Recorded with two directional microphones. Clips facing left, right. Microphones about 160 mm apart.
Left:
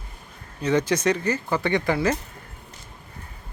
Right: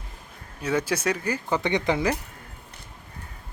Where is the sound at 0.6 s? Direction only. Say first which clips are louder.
Left 4 dB; 5° right (ahead or behind).